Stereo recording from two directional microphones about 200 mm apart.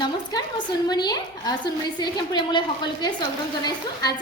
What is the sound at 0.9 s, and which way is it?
A woman's voice, 20° left (ahead or behind).